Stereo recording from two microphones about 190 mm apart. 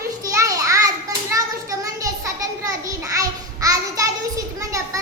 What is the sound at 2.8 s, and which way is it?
A child's voice, 20° right (ahead or behind).